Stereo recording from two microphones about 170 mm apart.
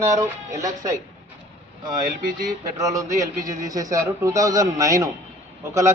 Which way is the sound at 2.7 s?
20° right (ahead or behind).